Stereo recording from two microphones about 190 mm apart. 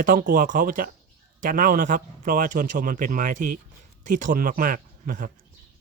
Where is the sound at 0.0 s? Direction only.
45° right (ahead or behind).